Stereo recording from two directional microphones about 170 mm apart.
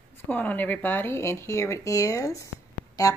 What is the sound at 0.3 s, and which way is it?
Speech, 10° left (ahead or behind).